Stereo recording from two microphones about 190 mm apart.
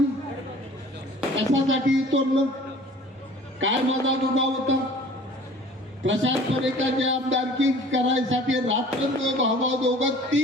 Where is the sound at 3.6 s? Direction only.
85° right.